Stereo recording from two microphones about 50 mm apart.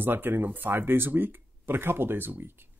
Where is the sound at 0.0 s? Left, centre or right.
Right.